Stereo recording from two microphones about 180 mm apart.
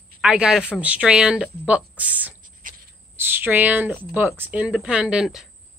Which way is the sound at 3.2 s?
10° right (ahead or behind).